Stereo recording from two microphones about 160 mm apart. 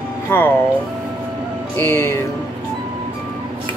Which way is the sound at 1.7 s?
15° left (ahead or behind).